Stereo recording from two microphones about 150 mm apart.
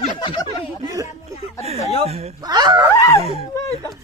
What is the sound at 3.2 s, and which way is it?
Speech, 45° right (ahead or behind).